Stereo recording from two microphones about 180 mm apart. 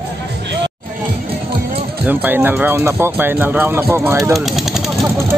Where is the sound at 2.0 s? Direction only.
10° right (ahead or behind).